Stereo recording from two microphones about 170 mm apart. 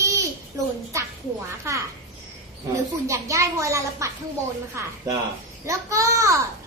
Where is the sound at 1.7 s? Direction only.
15° right (ahead or behind).